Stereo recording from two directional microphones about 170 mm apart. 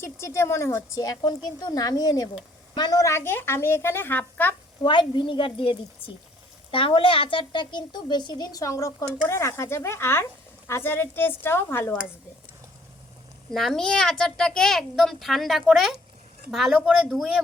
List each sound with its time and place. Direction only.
0.0 s a woman's voice: 15° left (ahead or behind)
4.9 s a woman's voice: 30° left (ahead or behind)
13.5 s a child's voice: centre (ahead or behind)